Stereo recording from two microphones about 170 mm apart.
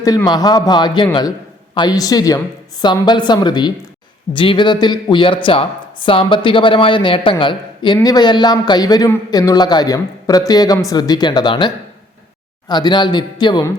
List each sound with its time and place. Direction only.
0.0 s a man's voice: 20° left (ahead or behind)